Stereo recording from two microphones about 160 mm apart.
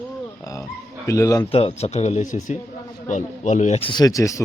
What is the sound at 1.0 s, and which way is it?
Speech, 20° left (ahead or behind).